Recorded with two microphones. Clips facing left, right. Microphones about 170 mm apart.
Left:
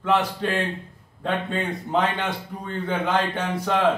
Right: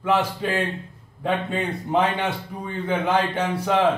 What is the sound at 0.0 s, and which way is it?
A man's voice, 10° right (ahead or behind).